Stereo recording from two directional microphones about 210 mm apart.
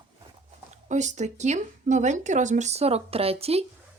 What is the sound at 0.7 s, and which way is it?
Speech, 35° right (ahead or behind).